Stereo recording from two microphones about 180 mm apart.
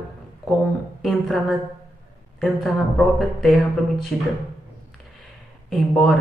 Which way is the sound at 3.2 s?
Centre (ahead or behind).